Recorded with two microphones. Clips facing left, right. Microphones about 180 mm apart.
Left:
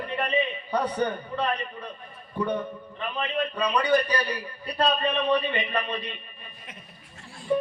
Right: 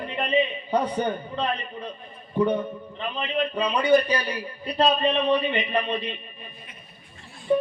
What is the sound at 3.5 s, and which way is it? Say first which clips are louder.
Speech: right 3 dB; 25° right (ahead or behind).